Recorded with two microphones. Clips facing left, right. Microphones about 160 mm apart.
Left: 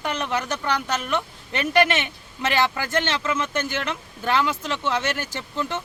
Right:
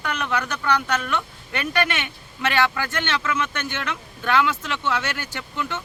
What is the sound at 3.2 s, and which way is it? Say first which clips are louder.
Speech: left 1 dB; 30° left (ahead or behind).